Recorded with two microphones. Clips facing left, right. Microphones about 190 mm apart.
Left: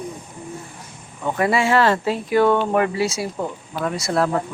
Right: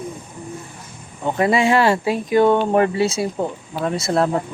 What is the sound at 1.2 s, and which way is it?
Speech, 20° right (ahead or behind).